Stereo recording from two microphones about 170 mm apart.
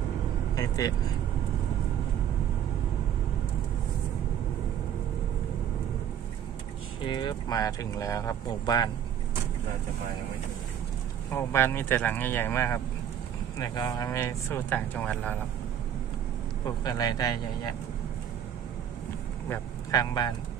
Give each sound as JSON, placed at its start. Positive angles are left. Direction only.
{"t": 0.6, "sound": "vehicle", "side_deg": 20}
{"t": 7.0, "sound": "speech", "side_deg": 25}
{"t": 11.2, "sound": "speech", "side_deg": 15}
{"t": 16.6, "sound": "speech", "side_deg": 20}
{"t": 19.5, "sound": "a man's voice", "side_deg": 25}